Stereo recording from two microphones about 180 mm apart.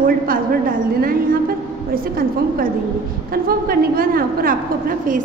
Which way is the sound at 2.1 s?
55° right (ahead or behind).